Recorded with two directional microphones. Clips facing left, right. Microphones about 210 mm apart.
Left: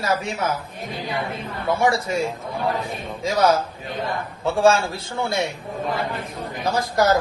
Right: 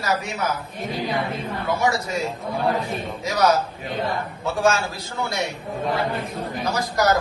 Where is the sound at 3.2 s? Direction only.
30° left (ahead or behind).